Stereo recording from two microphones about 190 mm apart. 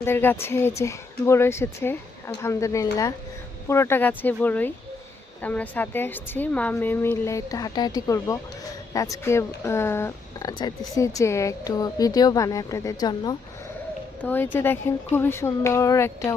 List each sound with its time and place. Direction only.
0.0 s speech: 10° left (ahead or behind)
14.2 s speech: 10° left (ahead or behind)